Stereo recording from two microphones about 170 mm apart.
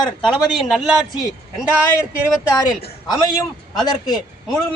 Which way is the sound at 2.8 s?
35° left (ahead or behind).